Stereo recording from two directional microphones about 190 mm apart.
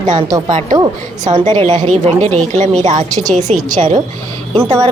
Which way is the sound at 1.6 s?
40° right (ahead or behind).